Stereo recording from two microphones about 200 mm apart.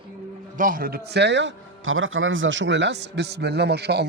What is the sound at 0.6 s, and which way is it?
A man's voice, 45° right (ahead or behind).